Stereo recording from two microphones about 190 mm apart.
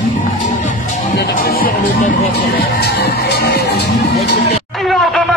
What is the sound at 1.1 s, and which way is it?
Music, 55° left (ahead or behind).